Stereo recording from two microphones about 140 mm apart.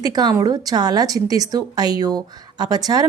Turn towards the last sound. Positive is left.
turn(degrees=-30)  # may be behind; listen again after turning